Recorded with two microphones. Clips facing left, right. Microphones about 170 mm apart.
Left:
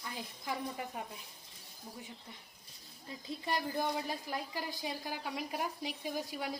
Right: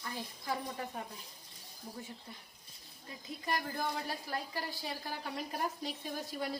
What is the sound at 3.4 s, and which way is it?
Speech, 20° left (ahead or behind).